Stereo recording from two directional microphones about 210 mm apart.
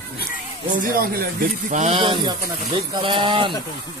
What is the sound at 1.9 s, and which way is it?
Speech, 20° right (ahead or behind).